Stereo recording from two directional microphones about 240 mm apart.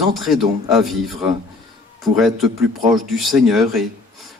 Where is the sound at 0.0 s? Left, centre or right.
Centre.